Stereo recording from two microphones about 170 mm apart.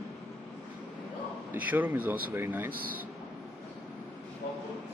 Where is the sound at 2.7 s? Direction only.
60° right (ahead or behind).